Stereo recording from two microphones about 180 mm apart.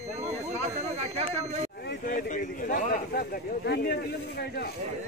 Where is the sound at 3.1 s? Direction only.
60° left (ahead or behind).